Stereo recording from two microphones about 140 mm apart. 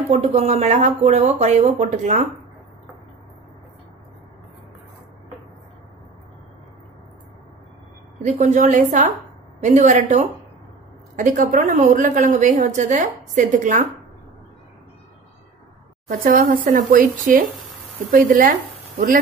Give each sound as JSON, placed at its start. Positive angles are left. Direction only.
{"t": 0.1, "sound": "speech", "side_deg": -50}
{"t": 8.2, "sound": "a woman's voice", "side_deg": -60}
{"t": 16.1, "sound": "speech", "side_deg": -90}